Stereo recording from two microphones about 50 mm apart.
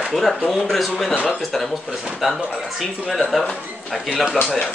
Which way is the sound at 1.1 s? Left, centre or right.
Left.